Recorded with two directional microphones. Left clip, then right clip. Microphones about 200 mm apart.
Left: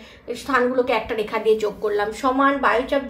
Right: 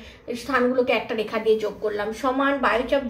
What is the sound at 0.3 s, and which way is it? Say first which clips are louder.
A woman's voice: left 2 dB; 35° left (ahead or behind).